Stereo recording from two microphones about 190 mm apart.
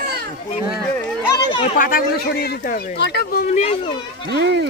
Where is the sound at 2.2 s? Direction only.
60° left (ahead or behind); by 4.3 s 30° left (ahead or behind).